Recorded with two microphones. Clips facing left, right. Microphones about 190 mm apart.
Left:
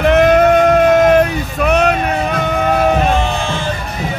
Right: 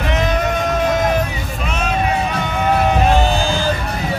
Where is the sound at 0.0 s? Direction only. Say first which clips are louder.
Left 9 dB; 60° left (ahead or behind).